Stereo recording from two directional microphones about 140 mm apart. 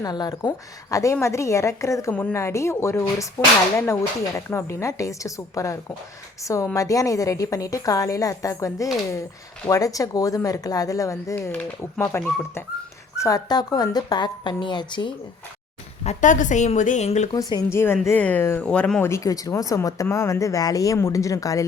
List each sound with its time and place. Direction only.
0.0 s speech: 30° left (ahead or behind)
16.0 s a woman's voice: 60° left (ahead or behind)
17.3 s speech: 25° left (ahead or behind); by 19.1 s 10° left (ahead or behind)
19.1 s speech: 25° left (ahead or behind)